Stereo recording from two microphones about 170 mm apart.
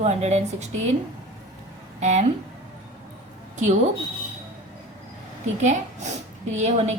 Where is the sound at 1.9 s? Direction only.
40° right (ahead or behind).